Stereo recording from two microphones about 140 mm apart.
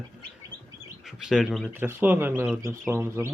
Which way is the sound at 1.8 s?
15° right (ahead or behind).